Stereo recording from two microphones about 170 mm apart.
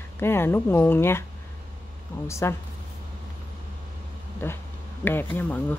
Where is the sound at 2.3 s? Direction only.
15° left (ahead or behind).